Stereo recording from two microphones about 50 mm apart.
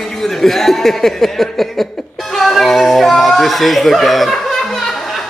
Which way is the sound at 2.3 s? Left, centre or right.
Centre.